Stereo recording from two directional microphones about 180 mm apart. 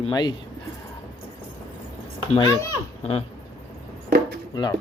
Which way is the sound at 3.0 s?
35° left (ahead or behind).